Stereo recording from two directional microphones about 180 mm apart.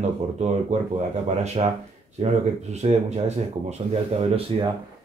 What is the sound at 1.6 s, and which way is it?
Speech, 30° right (ahead or behind).